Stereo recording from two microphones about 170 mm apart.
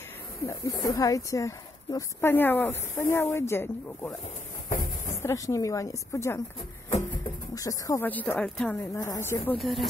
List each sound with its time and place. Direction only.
0.5 s speech: 20° left (ahead or behind)
4.6 s a sound: 50° left (ahead or behind)
5.1 s speech: 15° left (ahead or behind)
7.5 s speech: 20° left (ahead or behind)
9.0 s speech: 20° left (ahead or behind)
9.6 s speech: centre (ahead or behind)